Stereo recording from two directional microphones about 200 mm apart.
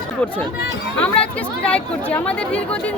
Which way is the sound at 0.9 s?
5° left (ahead or behind).